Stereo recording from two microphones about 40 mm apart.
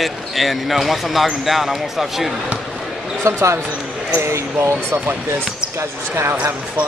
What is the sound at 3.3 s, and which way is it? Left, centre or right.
Speech, right.